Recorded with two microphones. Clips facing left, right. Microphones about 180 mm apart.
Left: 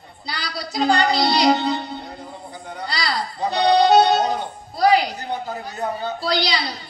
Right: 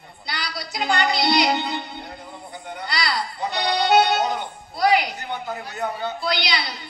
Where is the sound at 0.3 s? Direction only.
35° left (ahead or behind).